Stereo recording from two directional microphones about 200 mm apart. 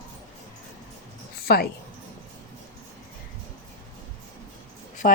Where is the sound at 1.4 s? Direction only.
50° left (ahead or behind).